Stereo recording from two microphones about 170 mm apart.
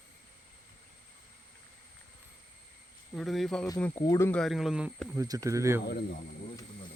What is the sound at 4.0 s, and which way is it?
Speech, 20° left (ahead or behind).